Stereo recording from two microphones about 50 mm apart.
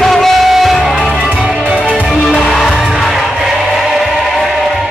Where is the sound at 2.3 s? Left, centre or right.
Centre.